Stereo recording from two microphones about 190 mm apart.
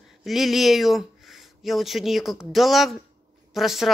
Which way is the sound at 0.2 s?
Centre (ahead or behind).